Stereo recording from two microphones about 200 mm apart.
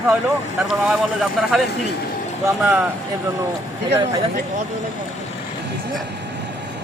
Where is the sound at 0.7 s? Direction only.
Centre (ahead or behind).